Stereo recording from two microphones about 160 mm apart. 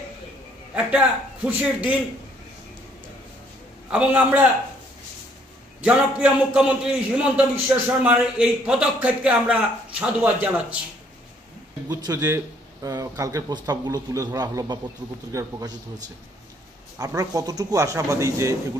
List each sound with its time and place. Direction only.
0.7 s a man's voice: 5° right (ahead or behind)
3.9 s a man's voice: 5° right (ahead or behind)
5.8 s a man's voice: 5° right (ahead or behind)
11.9 s speech: 20° right (ahead or behind)
17.0 s speech: 20° right (ahead or behind)